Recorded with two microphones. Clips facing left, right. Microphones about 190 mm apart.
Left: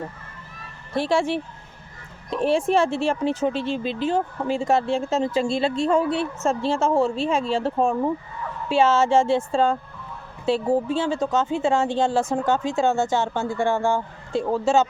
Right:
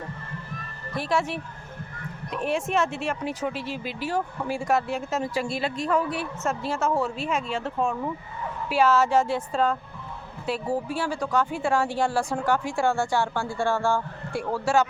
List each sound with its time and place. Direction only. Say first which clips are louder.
0.9 s a woman's voice: left 5 dB; 30° left (ahead or behind)